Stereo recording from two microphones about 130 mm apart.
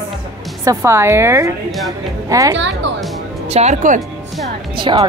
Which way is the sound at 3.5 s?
60° right (ahead or behind).